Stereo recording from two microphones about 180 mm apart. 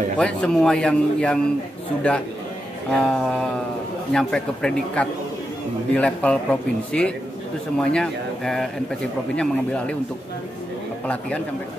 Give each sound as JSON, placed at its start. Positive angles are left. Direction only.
{"t": 0.2, "sound": "a man's voice", "side_deg": 5}
{"t": 2.9, "sound": "a man's voice", "side_deg": 5}
{"t": 11.1, "sound": "a man's voice", "side_deg": 5}